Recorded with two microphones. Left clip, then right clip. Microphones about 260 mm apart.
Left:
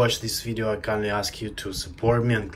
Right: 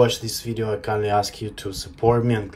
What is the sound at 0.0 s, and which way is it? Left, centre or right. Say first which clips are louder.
Speech: right 4 dB; centre.